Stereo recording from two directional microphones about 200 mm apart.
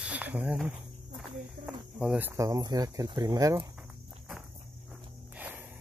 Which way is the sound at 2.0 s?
5° right (ahead or behind).